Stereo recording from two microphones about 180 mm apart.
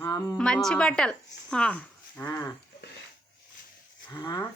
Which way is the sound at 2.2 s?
20° left (ahead or behind).